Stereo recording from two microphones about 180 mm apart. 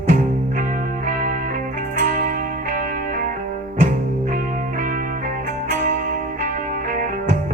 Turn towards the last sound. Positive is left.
turn(degrees=-45)  # may be behind; listen again after turning